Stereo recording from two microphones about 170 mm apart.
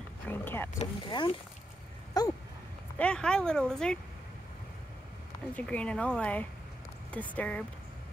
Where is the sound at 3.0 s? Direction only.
5° left (ahead or behind).